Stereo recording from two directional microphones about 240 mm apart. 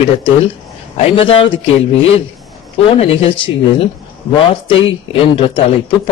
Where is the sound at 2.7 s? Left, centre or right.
Left.